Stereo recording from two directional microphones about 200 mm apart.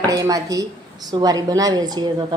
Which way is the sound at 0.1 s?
20° right (ahead or behind).